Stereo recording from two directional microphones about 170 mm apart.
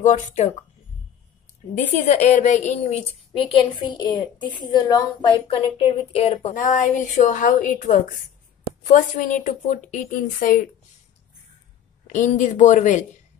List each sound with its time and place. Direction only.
0.0 s a woman's voice: 45° left (ahead or behind)
1.8 s a woman's voice: 40° left (ahead or behind)
6.5 s a woman's voice: 50° left (ahead or behind)
12.1 s a woman's voice: 45° left (ahead or behind)